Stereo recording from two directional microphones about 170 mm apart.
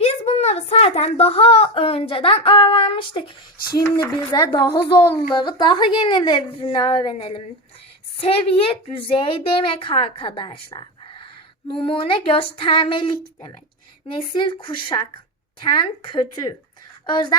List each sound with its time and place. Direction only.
0.0 s a child's voice: 40° left (ahead or behind)